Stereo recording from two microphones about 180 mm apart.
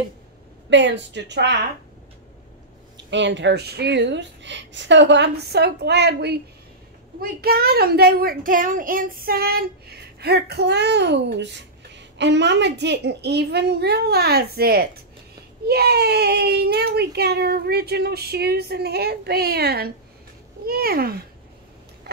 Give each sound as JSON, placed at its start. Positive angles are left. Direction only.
{"t": 0.7, "sound": "speech", "side_deg": -80}
{"t": 3.1, "sound": "a child's voice", "side_deg": -80}